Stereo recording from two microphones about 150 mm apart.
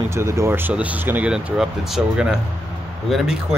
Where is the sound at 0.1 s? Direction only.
20° right (ahead or behind).